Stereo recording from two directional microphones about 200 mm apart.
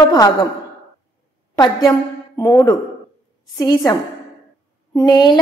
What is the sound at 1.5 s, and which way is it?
A woman's voice, 20° left (ahead or behind).